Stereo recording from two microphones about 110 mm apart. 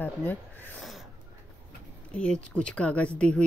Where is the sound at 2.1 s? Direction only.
10° left (ahead or behind).